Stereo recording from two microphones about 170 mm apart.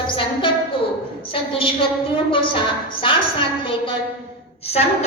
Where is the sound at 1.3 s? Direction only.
30° left (ahead or behind).